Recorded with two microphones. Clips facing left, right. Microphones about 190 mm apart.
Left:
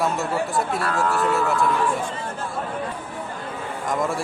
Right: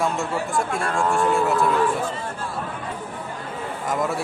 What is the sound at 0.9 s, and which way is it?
Speech, 30° right (ahead or behind).